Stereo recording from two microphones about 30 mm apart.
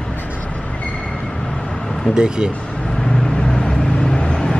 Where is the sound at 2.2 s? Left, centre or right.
Right.